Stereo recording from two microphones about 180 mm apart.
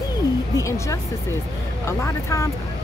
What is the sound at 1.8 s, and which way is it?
Speech, 15° left (ahead or behind).